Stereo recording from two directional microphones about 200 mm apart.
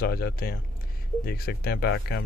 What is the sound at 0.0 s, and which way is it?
Speech, 50° left (ahead or behind).